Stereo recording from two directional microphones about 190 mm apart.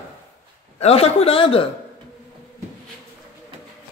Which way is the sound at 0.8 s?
30° left (ahead or behind).